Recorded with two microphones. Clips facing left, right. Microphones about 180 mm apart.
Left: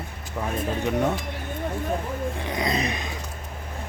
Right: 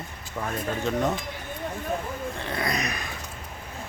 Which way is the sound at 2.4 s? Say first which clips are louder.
Left 2 dB; 15° left (ahead or behind).